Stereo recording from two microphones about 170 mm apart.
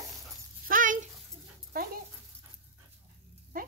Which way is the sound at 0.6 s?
55° right (ahead or behind).